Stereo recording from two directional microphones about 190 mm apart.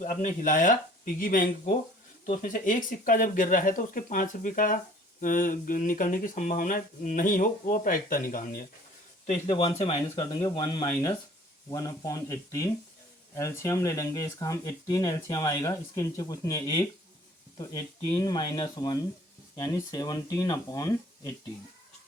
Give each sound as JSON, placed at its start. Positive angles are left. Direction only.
{"t": 0.0, "sound": "speech", "side_deg": 40}
{"t": 9.6, "sound": "speech", "side_deg": 30}
{"t": 18.1, "sound": "speech", "side_deg": 20}